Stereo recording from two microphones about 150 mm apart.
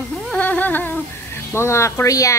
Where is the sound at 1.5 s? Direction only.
15° left (ahead or behind).